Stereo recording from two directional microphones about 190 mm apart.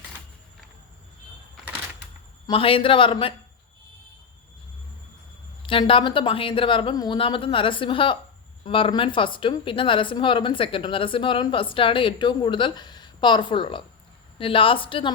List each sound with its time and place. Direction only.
2.5 s speech: 30° left (ahead or behind)
5.6 s speech: 25° left (ahead or behind)